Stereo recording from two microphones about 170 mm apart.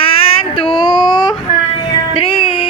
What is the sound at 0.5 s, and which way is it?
Whimper, 25° left (ahead or behind).